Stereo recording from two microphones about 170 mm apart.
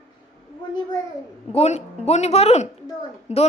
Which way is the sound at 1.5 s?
40° left (ahead or behind).